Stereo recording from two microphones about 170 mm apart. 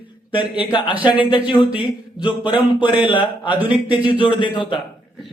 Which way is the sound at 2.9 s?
30° left (ahead or behind).